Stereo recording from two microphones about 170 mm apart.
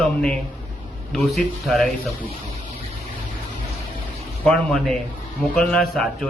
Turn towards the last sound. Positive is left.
turn(degrees=5)  # may be behind; listen again after turning